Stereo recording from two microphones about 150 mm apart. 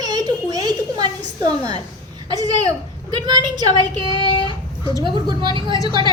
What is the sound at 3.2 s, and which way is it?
Speech, 30° right (ahead or behind).